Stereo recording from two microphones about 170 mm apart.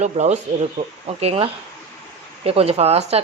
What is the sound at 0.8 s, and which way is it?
Speech, 55° right (ahead or behind).